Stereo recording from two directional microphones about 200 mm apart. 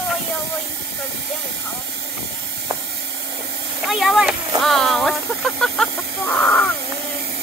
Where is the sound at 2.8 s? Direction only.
60° right (ahead or behind).